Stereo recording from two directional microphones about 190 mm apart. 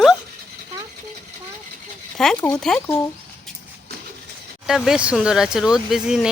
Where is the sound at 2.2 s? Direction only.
Centre (ahead or behind).